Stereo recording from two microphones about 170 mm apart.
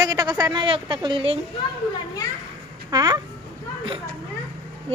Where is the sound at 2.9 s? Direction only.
20° right (ahead or behind).